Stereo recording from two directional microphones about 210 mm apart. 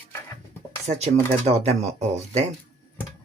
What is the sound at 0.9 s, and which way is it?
Speech, 30° right (ahead or behind).